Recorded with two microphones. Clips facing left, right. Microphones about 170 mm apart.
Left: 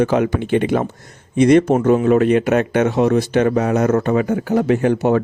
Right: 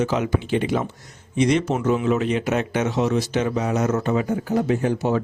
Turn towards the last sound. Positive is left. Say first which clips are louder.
# left 6 dB
turn(degrees=60)  # may be behind; listen again after turning